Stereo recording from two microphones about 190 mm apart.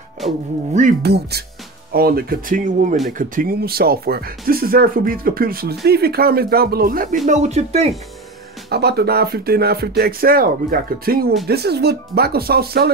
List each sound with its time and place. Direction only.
1.0 s speech: 60° right (ahead or behind)
7.2 s speech: 35° right (ahead or behind)
8.6 s speech: 60° right (ahead or behind)